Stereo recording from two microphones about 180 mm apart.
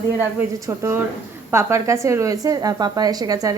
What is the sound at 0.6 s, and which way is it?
A woman's voice, 15° right (ahead or behind).